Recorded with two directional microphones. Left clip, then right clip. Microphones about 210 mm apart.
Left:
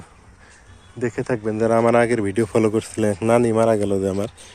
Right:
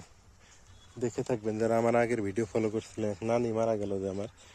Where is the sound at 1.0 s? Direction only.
10° right (ahead or behind).